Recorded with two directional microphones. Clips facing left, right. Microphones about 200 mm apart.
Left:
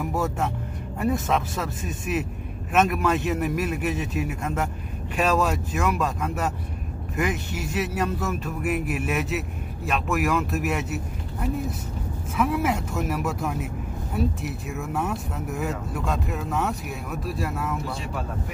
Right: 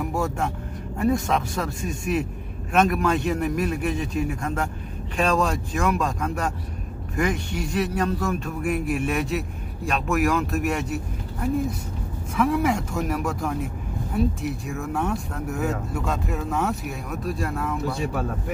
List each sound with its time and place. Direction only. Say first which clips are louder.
0.0 s vehicle: even; centre (ahead or behind)
0.9 s speech: right 2 dB; centre (ahead or behind)
12.4 s speech: right 2 dB; 5° left (ahead or behind)